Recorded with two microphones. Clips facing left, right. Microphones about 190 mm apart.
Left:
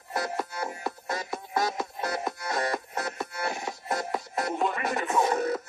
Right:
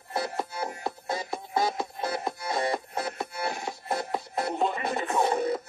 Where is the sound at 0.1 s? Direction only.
30° right (ahead or behind).